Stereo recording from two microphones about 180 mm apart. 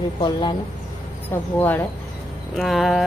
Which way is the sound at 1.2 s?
10° left (ahead or behind).